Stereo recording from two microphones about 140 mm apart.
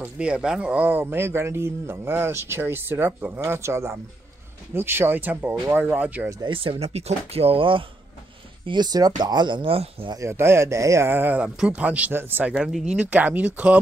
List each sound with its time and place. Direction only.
0.0 s speech: 10° right (ahead or behind)
6.4 s speech: 40° right (ahead or behind)
10.1 s speech: 20° right (ahead or behind)
12.5 s speech: centre (ahead or behind)